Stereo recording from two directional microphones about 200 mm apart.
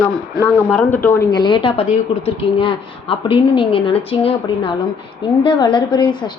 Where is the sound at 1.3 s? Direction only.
20° left (ahead or behind).